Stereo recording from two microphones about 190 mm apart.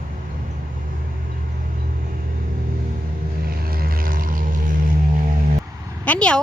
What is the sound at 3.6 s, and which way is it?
Vehicle, 50° right (ahead or behind).